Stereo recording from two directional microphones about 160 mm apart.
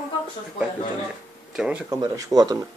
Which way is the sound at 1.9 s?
20° right (ahead or behind).